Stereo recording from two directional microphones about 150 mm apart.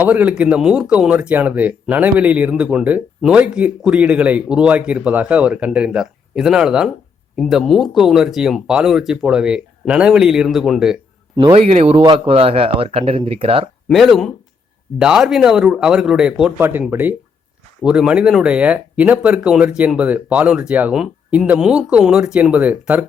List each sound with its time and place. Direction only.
0.0 s speech: 10° right (ahead or behind)
11.5 s speech: 45° right (ahead or behind)
13.8 s speech: centre (ahead or behind)